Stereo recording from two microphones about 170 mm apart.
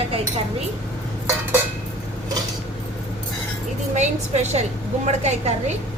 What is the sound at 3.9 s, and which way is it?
Speech, 40° right (ahead or behind).